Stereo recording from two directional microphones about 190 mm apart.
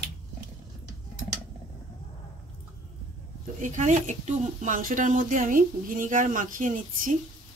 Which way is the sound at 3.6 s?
40° right (ahead or behind).